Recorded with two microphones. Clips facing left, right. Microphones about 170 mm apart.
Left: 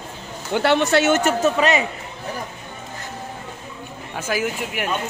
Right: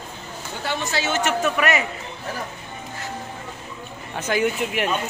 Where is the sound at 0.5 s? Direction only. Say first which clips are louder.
Left 10 dB; 70° left (ahead or behind).